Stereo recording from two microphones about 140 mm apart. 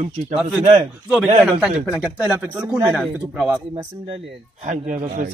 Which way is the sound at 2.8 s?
5° right (ahead or behind).